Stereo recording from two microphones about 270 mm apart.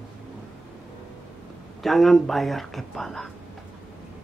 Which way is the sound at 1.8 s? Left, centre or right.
Centre.